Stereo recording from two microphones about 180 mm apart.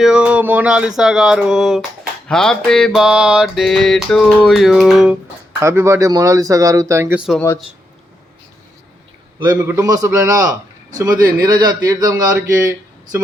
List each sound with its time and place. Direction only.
0.0 s music: 5° right (ahead or behind)
2.2 s speech: 5° left (ahead or behind)
2.6 s music: 5° left (ahead or behind)
5.5 s speech: 15° right (ahead or behind)
7.3 s speech: 15° left (ahead or behind)
9.6 s a man's voice: 15° right (ahead or behind)